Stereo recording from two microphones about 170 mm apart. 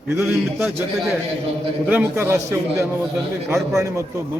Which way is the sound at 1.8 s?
10° right (ahead or behind).